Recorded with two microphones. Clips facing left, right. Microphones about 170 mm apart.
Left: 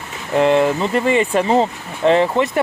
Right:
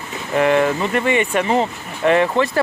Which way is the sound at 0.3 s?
20° left (ahead or behind).